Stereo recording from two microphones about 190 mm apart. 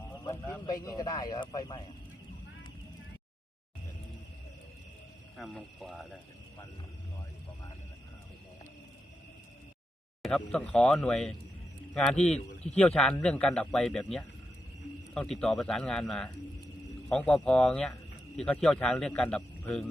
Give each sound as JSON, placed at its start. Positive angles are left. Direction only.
{"t": 0.3, "sound": "a sound", "side_deg": 10}
{"t": 0.6, "sound": "speech", "side_deg": 20}
{"t": 5.4, "sound": "a man's voice", "side_deg": 5}
{"t": 10.2, "sound": "a man's voice", "side_deg": 5}